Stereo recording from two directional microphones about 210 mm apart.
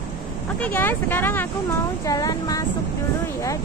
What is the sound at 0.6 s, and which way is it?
Speech, 10° left (ahead or behind).